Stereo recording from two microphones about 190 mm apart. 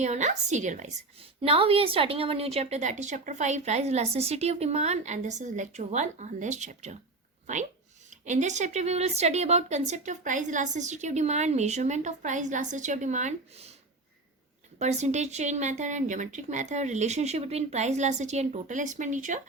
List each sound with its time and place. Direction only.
0.0 s a woman's voice: 40° right (ahead or behind)
8.1 s a woman's voice: 40° right (ahead or behind)
14.8 s a woman's voice: 35° right (ahead or behind)